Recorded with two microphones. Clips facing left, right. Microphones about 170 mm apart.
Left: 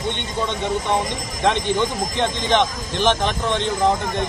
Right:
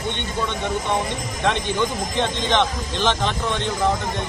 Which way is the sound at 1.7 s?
15° left (ahead or behind).